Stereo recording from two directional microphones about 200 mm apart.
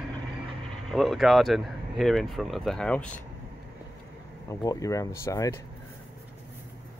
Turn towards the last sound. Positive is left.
turn(degrees=15)  # may be behind; listen again after turning